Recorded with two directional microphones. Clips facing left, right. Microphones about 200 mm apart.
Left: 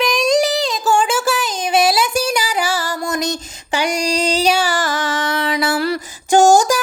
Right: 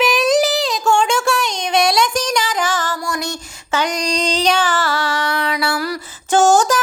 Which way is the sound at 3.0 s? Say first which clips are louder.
Left 3 dB; 20° left (ahead or behind).